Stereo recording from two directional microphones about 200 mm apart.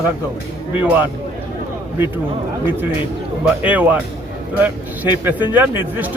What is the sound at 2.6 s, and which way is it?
Speech, 10° right (ahead or behind).